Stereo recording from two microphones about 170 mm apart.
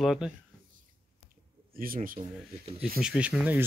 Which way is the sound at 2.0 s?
45° right (ahead or behind).